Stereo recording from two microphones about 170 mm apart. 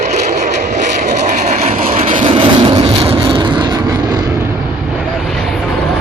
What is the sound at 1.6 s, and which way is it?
Vehicle, 50° right (ahead or behind).